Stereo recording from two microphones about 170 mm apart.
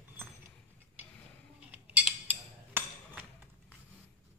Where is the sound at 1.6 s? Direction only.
5° right (ahead or behind).